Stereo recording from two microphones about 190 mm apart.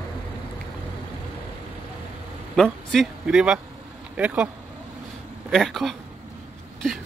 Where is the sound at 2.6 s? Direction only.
Centre (ahead or behind).